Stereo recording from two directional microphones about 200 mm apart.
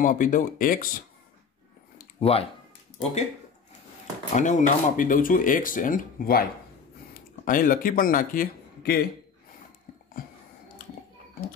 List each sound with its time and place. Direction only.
0.0 s speech: 40° left (ahead or behind)
2.1 s speech: 30° left (ahead or behind)
4.4 s speech: 35° left (ahead or behind)